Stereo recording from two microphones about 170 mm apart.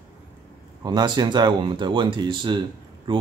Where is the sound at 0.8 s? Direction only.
25° right (ahead or behind).